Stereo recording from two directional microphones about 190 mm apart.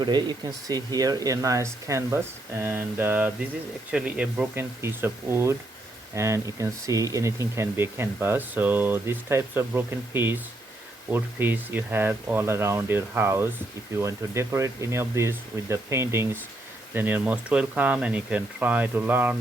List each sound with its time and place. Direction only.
0.0 s speech: 25° right (ahead or behind)